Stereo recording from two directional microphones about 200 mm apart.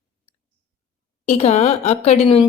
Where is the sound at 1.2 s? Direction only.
35° left (ahead or behind).